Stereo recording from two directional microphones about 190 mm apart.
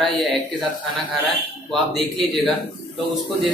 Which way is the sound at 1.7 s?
Centre (ahead or behind).